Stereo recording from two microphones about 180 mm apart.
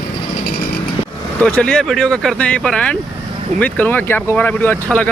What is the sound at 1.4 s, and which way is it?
Speech, 5° left (ahead or behind).